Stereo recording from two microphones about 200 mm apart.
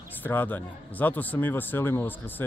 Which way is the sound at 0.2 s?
10° left (ahead or behind).